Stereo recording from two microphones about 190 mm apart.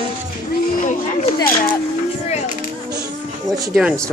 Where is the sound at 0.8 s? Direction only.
45° left (ahead or behind).